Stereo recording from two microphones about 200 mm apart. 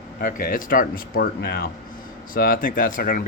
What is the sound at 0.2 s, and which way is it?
Speech, 45° left (ahead or behind).